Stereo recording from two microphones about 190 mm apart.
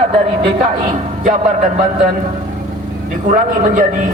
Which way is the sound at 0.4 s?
35° right (ahead or behind).